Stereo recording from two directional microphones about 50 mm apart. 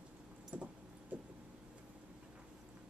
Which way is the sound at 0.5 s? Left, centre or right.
Right.